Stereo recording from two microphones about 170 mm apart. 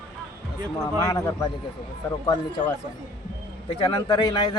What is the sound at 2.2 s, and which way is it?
Speech, 30° left (ahead or behind).